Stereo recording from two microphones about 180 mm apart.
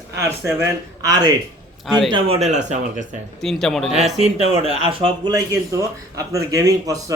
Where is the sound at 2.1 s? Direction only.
35° right (ahead or behind).